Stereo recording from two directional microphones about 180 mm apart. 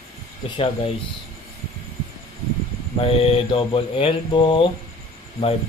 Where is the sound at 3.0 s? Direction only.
30° left (ahead or behind).